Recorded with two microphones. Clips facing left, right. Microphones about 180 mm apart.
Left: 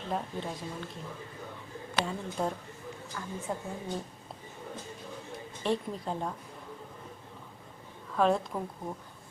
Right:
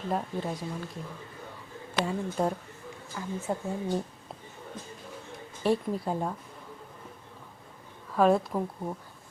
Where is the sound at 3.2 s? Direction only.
15° right (ahead or behind).